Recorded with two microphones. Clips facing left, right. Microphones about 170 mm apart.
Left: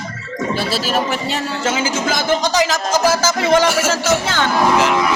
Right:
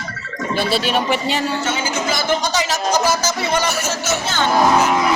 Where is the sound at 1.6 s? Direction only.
90° left.